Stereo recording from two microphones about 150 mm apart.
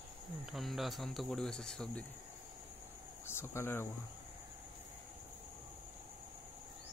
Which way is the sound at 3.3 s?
15° left (ahead or behind).